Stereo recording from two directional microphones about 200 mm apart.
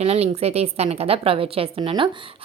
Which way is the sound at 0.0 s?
30° right (ahead or behind).